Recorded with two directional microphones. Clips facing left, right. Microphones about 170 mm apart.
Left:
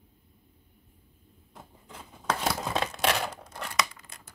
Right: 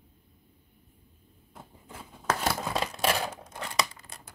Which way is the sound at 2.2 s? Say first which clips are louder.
Even; 5° right (ahead or behind).